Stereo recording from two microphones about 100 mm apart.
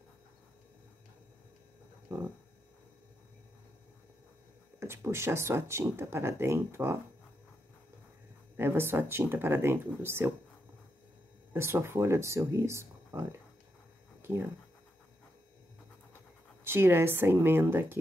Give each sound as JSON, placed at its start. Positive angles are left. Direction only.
{"t": 2.1, "sound": "a sound", "side_deg": -35}
{"t": 4.7, "sound": "speech", "side_deg": -25}
{"t": 8.5, "sound": "speech", "side_deg": -25}
{"t": 11.5, "sound": "speech", "side_deg": -25}
{"t": 16.6, "sound": "speech", "side_deg": -25}